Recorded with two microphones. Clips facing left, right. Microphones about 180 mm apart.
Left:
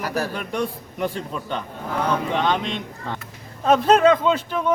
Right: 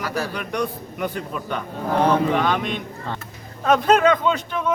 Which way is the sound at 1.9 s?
30° right (ahead or behind).